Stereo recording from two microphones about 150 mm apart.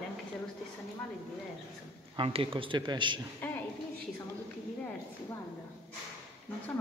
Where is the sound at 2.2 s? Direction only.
35° right (ahead or behind).